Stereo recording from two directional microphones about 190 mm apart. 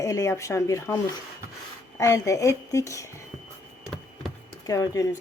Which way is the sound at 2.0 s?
15° left (ahead or behind).